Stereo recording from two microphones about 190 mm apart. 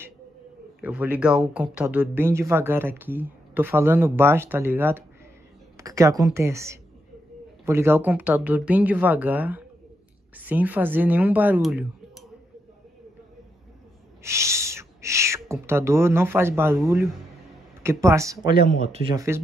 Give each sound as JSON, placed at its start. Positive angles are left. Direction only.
{"t": 0.7, "sound": "speech", "side_deg": -10}
{"t": 14.2, "sound": "speech", "side_deg": -15}
{"t": 18.7, "sound": "speech", "side_deg": -35}
{"t": 19.1, "sound": "speech", "side_deg": -15}